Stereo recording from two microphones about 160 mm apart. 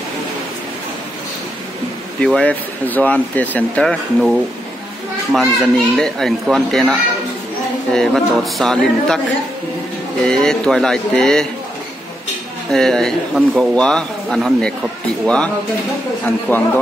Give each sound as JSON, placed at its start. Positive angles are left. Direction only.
{"t": 2.1, "sound": "speech", "side_deg": 5}
{"t": 10.2, "sound": "speech", "side_deg": 5}
{"t": 12.7, "sound": "speech", "side_deg": 5}